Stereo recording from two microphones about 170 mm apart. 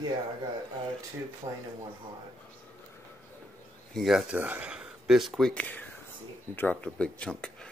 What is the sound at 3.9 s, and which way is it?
Speech, centre (ahead or behind).